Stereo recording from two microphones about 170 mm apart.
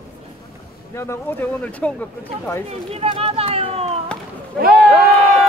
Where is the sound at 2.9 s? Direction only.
35° right (ahead or behind).